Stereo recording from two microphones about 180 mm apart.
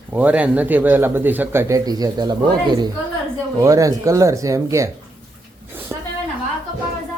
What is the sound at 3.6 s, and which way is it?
Speech, 20° right (ahead or behind).